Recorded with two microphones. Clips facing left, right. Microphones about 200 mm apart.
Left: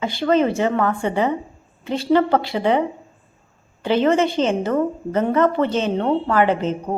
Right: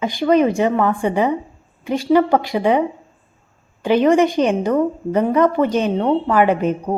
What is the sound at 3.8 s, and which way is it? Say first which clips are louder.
Speech: right 3 dB; 15° right (ahead or behind).